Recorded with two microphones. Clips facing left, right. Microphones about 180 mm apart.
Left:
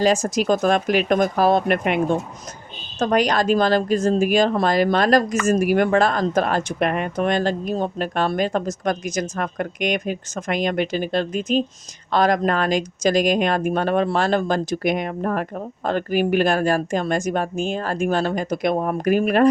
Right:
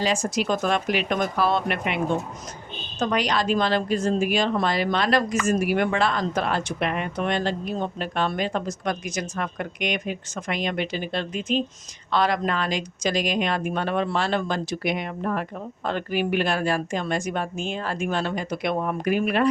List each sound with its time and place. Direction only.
0.0 s speech: 45° left (ahead or behind)
3.0 s speech: 45° left (ahead or behind)